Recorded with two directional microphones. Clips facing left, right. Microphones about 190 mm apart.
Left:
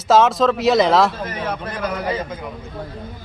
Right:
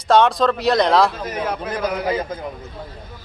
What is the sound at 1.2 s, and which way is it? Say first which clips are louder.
Speech: right 1 dB; 10° right (ahead or behind).